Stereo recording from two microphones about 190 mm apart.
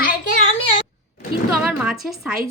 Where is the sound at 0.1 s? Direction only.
50° left (ahead or behind).